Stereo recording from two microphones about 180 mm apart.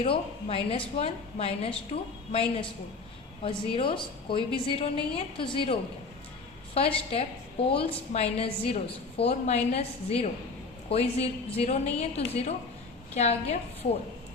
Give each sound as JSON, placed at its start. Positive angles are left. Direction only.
{"t": 0.0, "sound": "a woman's voice", "side_deg": 30}
{"t": 6.7, "sound": "a woman's voice", "side_deg": 30}